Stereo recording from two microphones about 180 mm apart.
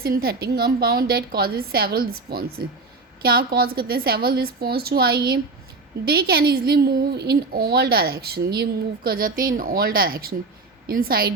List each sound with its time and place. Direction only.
0.0 s a woman's voice: 60° right (ahead or behind)